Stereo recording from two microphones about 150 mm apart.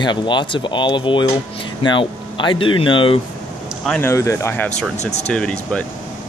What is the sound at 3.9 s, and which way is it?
Speech, 15° left (ahead or behind).